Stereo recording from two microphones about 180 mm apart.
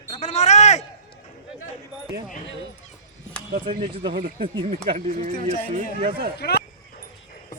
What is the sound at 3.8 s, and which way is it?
Speech, 30° right (ahead or behind).